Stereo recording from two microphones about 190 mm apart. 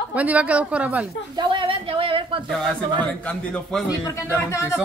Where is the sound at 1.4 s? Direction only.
25° right (ahead or behind).